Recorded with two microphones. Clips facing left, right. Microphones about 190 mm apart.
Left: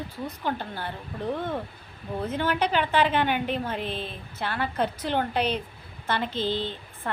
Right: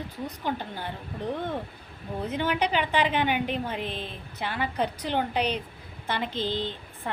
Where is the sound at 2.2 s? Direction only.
15° right (ahead or behind).